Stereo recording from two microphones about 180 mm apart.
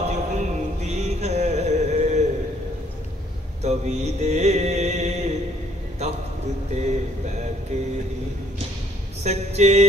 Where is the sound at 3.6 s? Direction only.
40° right (ahead or behind).